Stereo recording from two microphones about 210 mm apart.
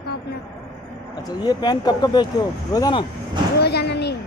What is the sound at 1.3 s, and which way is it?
Speech, 20° left (ahead or behind).